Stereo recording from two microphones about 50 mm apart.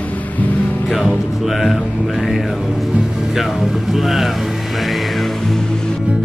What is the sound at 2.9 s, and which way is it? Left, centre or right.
Speech, centre.